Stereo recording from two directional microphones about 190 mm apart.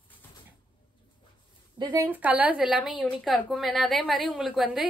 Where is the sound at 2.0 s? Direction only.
10° right (ahead or behind).